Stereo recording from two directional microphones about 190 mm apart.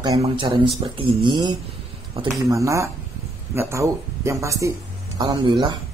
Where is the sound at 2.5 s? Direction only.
15° right (ahead or behind).